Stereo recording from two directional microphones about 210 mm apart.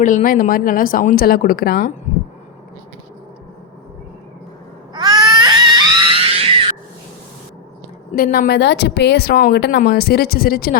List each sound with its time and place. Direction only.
0.0 s speech: 40° left (ahead or behind)
4.9 s baby cry: 20° right (ahead or behind)
8.1 s speech: 45° left (ahead or behind)